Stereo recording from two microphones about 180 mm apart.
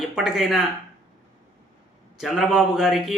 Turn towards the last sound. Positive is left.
turn(degrees=0)  # may be behind; listen again after turning